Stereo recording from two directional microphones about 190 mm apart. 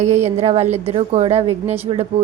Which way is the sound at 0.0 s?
40° right (ahead or behind).